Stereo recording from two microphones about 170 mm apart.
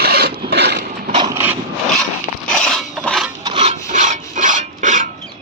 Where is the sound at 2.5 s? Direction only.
Centre (ahead or behind).